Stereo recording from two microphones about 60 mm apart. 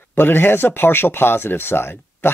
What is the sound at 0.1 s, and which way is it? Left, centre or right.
Speech, left.